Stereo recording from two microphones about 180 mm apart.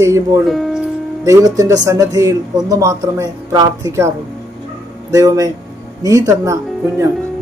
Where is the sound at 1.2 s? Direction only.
20° right (ahead or behind).